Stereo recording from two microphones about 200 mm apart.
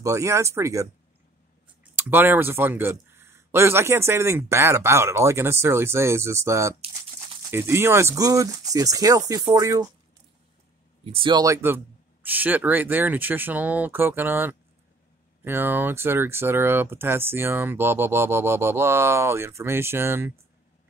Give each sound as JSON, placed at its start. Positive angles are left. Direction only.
{"t": 0.0, "sound": "speech", "side_deg": -15}
{"t": 2.0, "sound": "speech", "side_deg": -10}
{"t": 11.1, "sound": "speech", "side_deg": -20}